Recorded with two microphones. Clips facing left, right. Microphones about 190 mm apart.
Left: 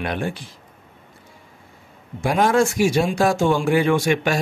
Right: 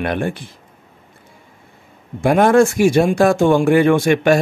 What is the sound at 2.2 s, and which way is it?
Speech, 55° right (ahead or behind).